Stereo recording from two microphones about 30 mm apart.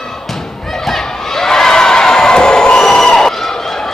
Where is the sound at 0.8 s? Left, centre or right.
Centre.